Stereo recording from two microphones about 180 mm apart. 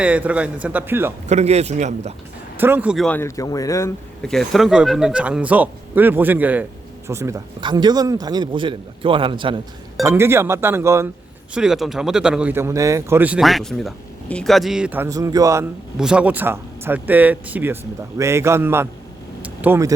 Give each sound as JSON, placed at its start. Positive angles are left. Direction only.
{"t": 0.0, "sound": "a man's voice", "side_deg": -5}
{"t": 1.3, "sound": "a man's voice", "side_deg": -35}
{"t": 2.6, "sound": "a man's voice", "side_deg": -10}
{"t": 3.1, "sound": "speech", "side_deg": 15}
{"t": 4.2, "sound": "a man's voice", "side_deg": 0}
{"t": 10.1, "sound": "a man's voice", "side_deg": -15}
{"t": 11.5, "sound": "speech", "side_deg": -5}
{"t": 16.0, "sound": "a man's voice", "side_deg": -5}